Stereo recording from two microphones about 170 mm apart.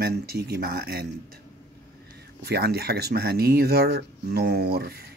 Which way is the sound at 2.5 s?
70° right (ahead or behind).